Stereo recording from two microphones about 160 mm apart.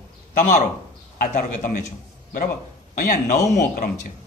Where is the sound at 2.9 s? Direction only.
55° left (ahead or behind).